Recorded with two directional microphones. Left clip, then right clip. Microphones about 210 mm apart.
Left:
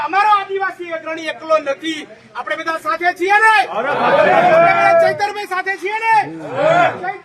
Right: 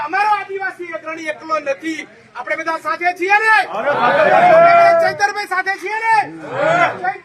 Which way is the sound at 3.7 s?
55° right (ahead or behind).